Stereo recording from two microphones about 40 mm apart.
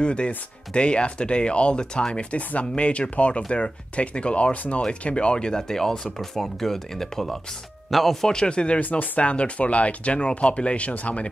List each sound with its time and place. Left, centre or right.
0.0 s speech: left; by 8.3 s centre
8.3 s speech: left